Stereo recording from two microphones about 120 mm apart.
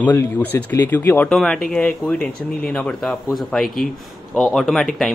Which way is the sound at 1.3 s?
5° left (ahead or behind).